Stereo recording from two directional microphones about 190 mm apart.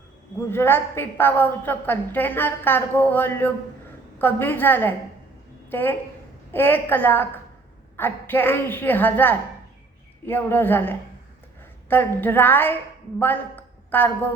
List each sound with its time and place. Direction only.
0.5 s a woman's voice: 10° left (ahead or behind)